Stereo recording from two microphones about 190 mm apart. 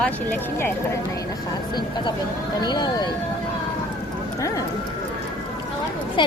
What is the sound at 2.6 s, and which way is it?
Speech, 20° left (ahead or behind).